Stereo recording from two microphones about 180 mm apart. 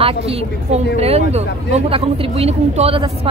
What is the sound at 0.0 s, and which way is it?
A woman's voice, 35° right (ahead or behind).